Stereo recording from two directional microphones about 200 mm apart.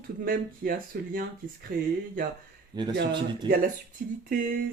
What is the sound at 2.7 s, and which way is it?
Speech, 20° right (ahead or behind).